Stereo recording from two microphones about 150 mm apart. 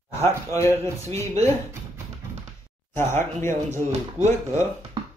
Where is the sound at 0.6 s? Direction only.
20° left (ahead or behind).